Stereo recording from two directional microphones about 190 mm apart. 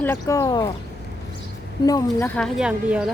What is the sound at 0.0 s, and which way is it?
Speech, 15° left (ahead or behind).